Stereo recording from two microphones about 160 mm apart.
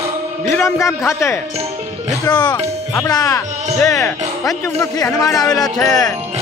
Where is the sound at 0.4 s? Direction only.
15° left (ahead or behind).